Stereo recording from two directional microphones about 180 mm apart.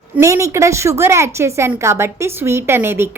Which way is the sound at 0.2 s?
15° right (ahead or behind).